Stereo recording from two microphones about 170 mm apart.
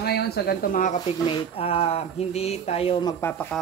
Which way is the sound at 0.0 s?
70° left (ahead or behind).